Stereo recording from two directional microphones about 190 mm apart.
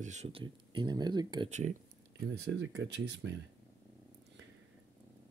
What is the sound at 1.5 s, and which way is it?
Speech, 40° right (ahead or behind).